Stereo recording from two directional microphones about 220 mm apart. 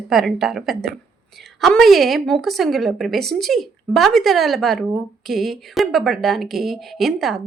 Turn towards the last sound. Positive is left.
turn(degrees=0)  # may be behind; listen again after turning